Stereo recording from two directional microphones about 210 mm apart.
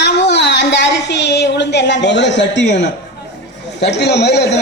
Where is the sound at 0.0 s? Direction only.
55° left (ahead or behind).